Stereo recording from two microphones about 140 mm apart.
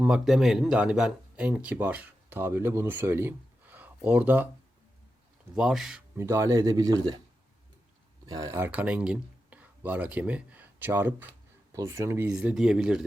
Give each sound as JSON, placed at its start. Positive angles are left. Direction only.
{"t": 0.0, "sound": "speech", "side_deg": -5}
{"t": 5.5, "sound": "speech", "side_deg": -5}
{"t": 6.1, "sound": "speech", "side_deg": -20}
{"t": 8.3, "sound": "speech", "side_deg": -20}
{"t": 12.3, "sound": "speech", "side_deg": -5}